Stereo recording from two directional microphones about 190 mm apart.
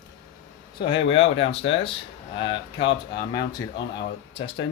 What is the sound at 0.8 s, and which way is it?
Speech, 30° left (ahead or behind).